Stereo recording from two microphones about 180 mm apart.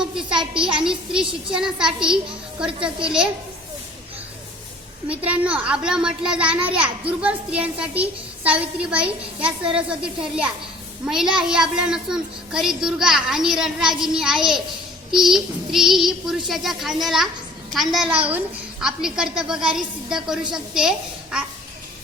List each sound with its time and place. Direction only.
0.0 s a sound: 5° right (ahead or behind)
0.5 s a woman's voice: 5° right (ahead or behind)
5.0 s a woman's voice: 10° right (ahead or behind)